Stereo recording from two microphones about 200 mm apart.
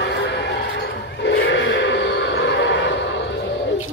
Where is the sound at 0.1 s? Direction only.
60° left (ahead or behind).